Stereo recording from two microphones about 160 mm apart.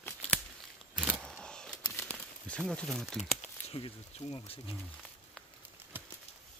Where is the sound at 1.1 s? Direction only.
5° left (ahead or behind).